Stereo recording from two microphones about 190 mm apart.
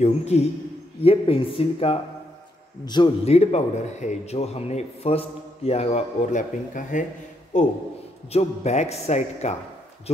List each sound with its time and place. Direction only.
0.0 s a man's voice: 35° left (ahead or behind)